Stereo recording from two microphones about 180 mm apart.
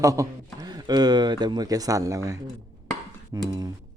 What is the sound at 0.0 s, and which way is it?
A woman's voice, 20° right (ahead or behind).